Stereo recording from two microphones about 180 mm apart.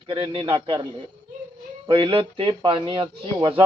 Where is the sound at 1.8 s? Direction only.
30° right (ahead or behind).